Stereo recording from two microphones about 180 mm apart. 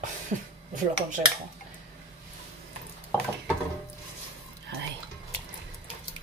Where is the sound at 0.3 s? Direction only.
45° right (ahead or behind).